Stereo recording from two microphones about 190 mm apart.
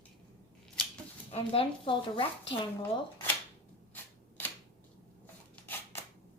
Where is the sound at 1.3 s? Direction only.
30° left (ahead or behind).